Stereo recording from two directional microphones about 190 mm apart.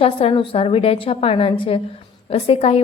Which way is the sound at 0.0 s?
30° left (ahead or behind).